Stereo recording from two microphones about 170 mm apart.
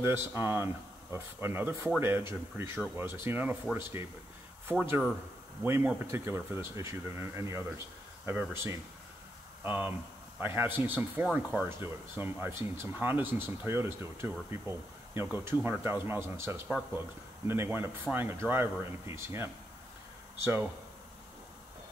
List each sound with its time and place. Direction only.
0.0 s speech: 15° right (ahead or behind)